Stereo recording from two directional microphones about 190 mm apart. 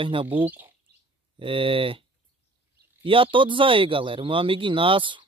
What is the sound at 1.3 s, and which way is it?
Speech, 25° right (ahead or behind).